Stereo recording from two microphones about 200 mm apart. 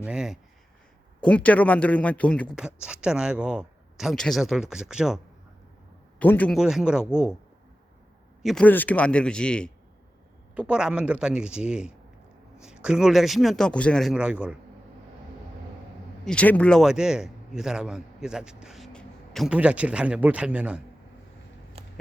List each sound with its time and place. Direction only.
0.0 s a man's voice: 5° right (ahead or behind)
1.2 s a man's voice: 5° left (ahead or behind)
6.1 s a man's voice: 10° left (ahead or behind)
6.6 s a man's voice: 5° right (ahead or behind)
8.4 s a man's voice: centre (ahead or behind)
10.5 s a man's voice: 5° right (ahead or behind)
16.2 s a man's voice: 5° left (ahead or behind)
21.8 s a sound: 30° right (ahead or behind)